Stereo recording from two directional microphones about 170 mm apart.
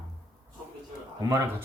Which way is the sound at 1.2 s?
20° right (ahead or behind).